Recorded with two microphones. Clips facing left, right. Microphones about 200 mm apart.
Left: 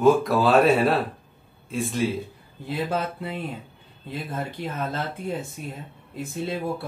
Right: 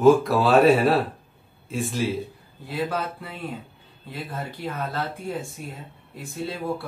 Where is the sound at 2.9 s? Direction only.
25° left (ahead or behind).